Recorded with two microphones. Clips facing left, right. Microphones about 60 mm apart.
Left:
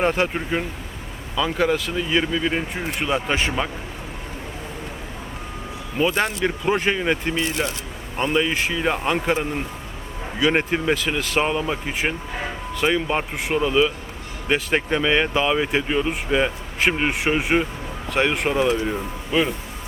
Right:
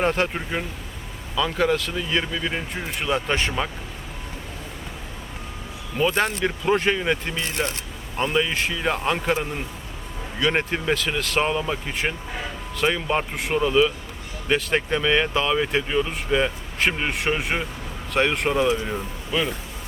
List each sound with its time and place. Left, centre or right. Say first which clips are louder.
0.0 s speech: left 2 dB; centre
6.0 s speech: left 1 dB; centre
19.3 s speech: left 4 dB; centre